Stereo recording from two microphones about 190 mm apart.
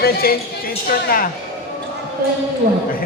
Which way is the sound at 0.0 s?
50° left (ahead or behind).